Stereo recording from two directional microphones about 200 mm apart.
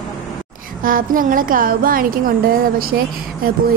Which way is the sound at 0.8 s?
45° right (ahead or behind).